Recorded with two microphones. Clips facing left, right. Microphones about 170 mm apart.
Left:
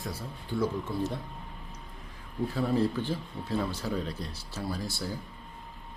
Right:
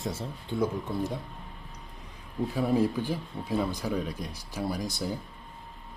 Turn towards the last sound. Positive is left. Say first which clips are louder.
# right 3 dB
turn(degrees=-20)  # may be behind; listen again after turning